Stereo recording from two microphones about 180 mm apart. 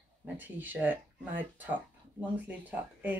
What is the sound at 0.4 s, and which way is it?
Speech, 10° right (ahead or behind).